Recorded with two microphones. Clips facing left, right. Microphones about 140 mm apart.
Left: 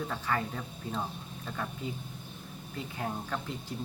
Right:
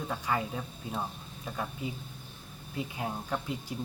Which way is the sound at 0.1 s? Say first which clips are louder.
Right 1 dB; 15° right (ahead or behind).